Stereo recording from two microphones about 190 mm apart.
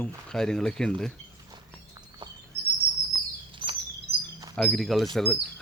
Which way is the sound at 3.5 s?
25° right (ahead or behind).